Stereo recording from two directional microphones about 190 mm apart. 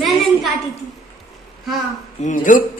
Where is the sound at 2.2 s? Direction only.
45° left (ahead or behind).